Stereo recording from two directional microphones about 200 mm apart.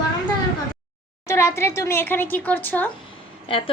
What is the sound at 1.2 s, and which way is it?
Speech, 15° left (ahead or behind).